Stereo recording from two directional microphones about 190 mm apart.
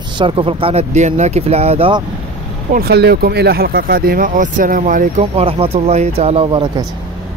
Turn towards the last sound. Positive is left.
turn(degrees=-25)  # may be behind; listen again after turning